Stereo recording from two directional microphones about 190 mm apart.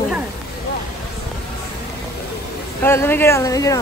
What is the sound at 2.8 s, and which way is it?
Speech, 10° left (ahead or behind).